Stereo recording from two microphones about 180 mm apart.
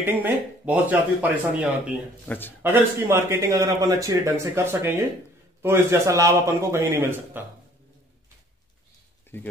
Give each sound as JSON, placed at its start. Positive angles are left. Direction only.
{"t": 0.0, "sound": "speech", "side_deg": -10}
{"t": 2.2, "sound": "a man's voice", "side_deg": 10}
{"t": 2.6, "sound": "speech", "side_deg": -15}